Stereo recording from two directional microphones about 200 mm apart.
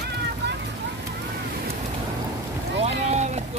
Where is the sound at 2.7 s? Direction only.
35° right (ahead or behind).